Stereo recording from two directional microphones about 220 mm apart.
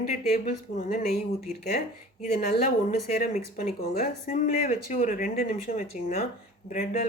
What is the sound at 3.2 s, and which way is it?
Speech, 35° left (ahead or behind).